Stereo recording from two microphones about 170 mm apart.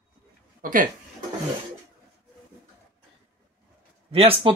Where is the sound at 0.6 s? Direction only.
50° right (ahead or behind).